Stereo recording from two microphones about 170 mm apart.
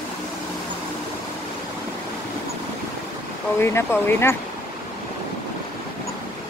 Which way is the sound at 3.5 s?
15° left (ahead or behind).